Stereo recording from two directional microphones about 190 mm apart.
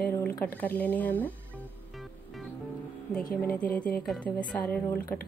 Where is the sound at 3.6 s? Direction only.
50° left (ahead or behind).